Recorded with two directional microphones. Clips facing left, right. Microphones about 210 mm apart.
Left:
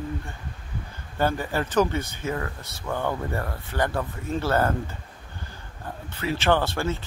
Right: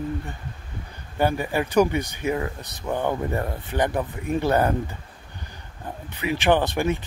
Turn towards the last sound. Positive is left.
turn(degrees=-15)  # may be behind; listen again after turning